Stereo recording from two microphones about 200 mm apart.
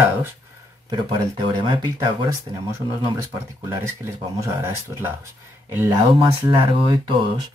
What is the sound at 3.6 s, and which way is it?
Speech, 15° right (ahead or behind).